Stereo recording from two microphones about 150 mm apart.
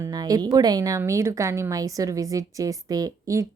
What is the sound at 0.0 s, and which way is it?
A woman's voice, 25° right (ahead or behind).